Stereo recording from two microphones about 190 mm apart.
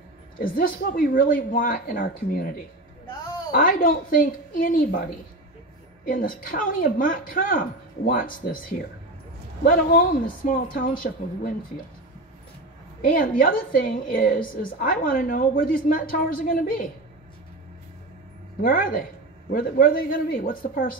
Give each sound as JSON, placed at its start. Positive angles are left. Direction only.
{"t": 0.4, "sound": "a woman's voice", "side_deg": 50}
{"t": 3.5, "sound": "a woman's voice", "side_deg": 50}
{"t": 6.0, "sound": "a woman's voice", "side_deg": 50}
{"t": 13.0, "sound": "a woman's voice", "side_deg": 45}
{"t": 18.6, "sound": "a woman's voice", "side_deg": 45}